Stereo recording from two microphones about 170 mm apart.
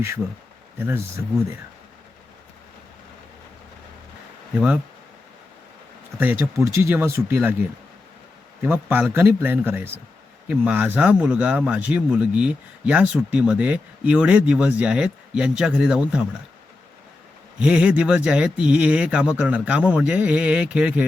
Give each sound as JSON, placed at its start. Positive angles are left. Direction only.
{"t": 0.8, "sound": "speech", "side_deg": -10}
{"t": 6.1, "sound": "speech", "side_deg": -10}
{"t": 8.6, "sound": "speech", "side_deg": -10}
{"t": 17.6, "sound": "speech", "side_deg": -5}